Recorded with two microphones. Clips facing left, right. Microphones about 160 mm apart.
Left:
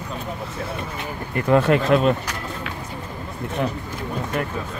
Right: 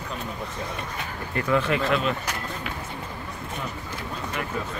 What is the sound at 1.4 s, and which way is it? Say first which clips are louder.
Speech: left 7 dB; 50° left (ahead or behind).